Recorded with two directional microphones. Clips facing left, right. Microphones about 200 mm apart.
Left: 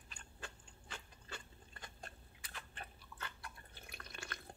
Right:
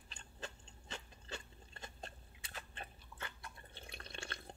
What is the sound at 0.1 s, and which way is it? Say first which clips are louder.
Biting: right 3 dB; 25° right (ahead or behind).